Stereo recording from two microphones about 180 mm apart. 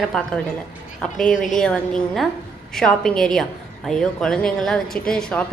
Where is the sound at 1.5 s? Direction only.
5° left (ahead or behind).